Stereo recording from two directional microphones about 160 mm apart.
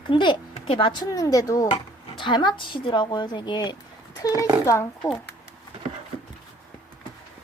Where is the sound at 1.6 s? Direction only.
35° left (ahead or behind); by 4.9 s 20° left (ahead or behind).